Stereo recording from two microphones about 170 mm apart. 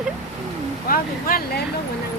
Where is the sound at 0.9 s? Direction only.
55° left (ahead or behind).